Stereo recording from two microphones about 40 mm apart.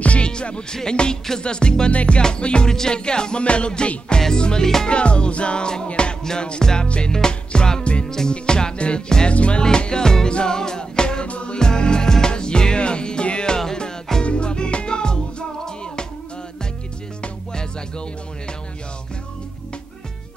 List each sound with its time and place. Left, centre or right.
0.0 s music: left
9.6 s music: left
11.2 s music: left
11.5 s music: centre
17.2 s music: left